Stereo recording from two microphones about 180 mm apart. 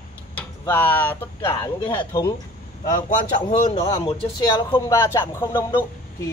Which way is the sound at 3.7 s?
25° left (ahead or behind).